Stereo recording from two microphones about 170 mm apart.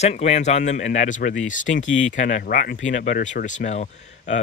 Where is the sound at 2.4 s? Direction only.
60° left (ahead or behind).